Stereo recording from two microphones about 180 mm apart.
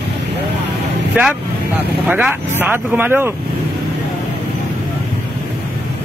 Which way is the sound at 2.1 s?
10° right (ahead or behind).